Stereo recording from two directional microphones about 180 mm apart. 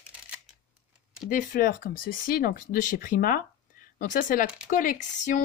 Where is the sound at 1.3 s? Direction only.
45° left (ahead or behind).